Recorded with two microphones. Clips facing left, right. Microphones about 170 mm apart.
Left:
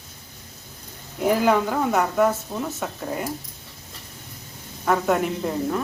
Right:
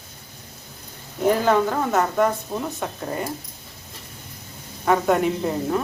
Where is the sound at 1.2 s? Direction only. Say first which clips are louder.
Right 1 dB; 10° left (ahead or behind).